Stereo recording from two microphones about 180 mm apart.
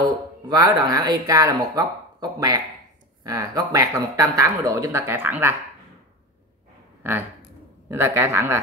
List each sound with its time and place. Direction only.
0.0 s speech: 20° right (ahead or behind)
7.0 s speech: 10° right (ahead or behind)